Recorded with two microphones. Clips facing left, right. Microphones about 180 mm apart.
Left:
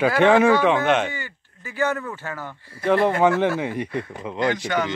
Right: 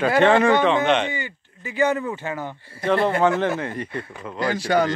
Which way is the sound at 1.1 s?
15° right (ahead or behind).